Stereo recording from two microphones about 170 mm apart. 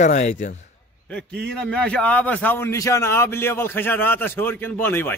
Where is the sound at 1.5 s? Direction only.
5° left (ahead or behind).